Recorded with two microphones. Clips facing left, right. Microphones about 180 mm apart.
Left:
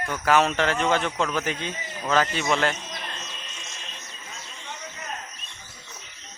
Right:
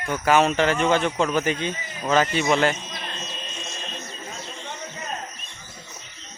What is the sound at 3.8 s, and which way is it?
Music, 45° right (ahead or behind).